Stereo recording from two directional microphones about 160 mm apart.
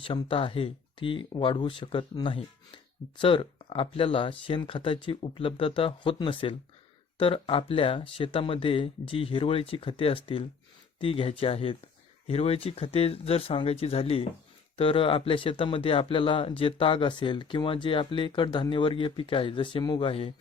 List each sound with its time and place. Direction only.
0.0 s speech: 30° left (ahead or behind)